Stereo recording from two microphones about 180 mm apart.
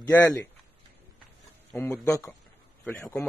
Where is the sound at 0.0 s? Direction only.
20° left (ahead or behind).